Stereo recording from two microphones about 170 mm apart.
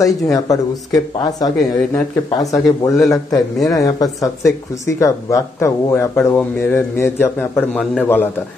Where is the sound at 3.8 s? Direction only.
20° left (ahead or behind); by 8.0 s centre (ahead or behind).